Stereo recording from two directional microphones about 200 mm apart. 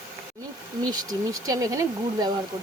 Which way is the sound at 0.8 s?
20° right (ahead or behind).